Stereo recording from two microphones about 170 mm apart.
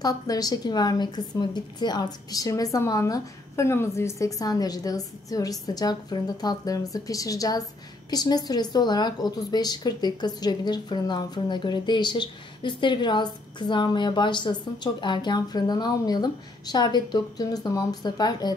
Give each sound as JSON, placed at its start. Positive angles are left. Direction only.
{"t": 0.0, "sound": "a woman's voice", "side_deg": 20}